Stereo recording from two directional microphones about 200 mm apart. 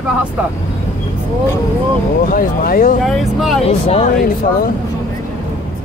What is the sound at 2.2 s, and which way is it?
Speech, 45° left (ahead or behind).